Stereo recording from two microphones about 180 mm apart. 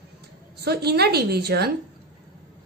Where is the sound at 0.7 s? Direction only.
65° right (ahead or behind).